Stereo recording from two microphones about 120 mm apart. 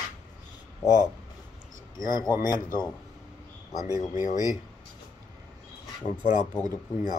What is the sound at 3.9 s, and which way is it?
Speech, 30° left (ahead or behind).